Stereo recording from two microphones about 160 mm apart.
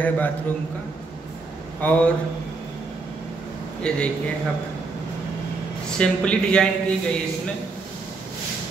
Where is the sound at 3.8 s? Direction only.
5° left (ahead or behind).